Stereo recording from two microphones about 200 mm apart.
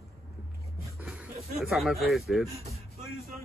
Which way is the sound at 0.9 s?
5° right (ahead or behind).